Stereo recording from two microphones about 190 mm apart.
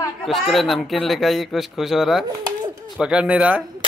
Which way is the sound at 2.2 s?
20° right (ahead or behind).